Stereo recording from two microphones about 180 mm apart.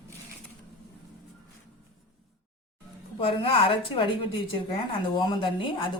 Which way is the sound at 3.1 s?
30° left (ahead or behind).